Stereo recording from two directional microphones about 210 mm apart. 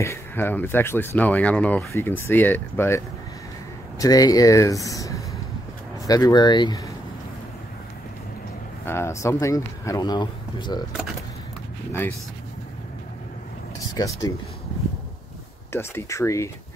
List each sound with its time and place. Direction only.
0.0 s speech: 10° left (ahead or behind)
4.0 s speech: 15° left (ahead or behind)
8.8 s speech: 10° left (ahead or behind)
13.9 s speech: 15° left (ahead or behind)
15.7 s speech: 10° left (ahead or behind)